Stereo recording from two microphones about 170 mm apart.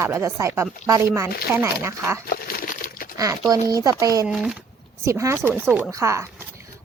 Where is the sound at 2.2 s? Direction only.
60° left (ahead or behind).